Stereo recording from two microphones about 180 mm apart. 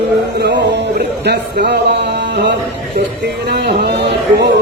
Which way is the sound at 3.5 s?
70° right (ahead or behind).